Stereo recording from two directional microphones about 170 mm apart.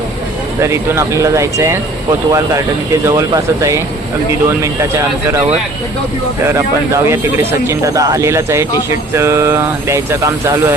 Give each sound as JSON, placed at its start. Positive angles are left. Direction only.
{"t": 0.6, "sound": "speech", "side_deg": -15}
{"t": 6.4, "sound": "speech", "side_deg": -15}